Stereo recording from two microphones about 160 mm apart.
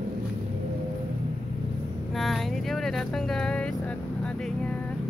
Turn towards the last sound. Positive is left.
turn(degrees=5)  # may be behind; listen again after turning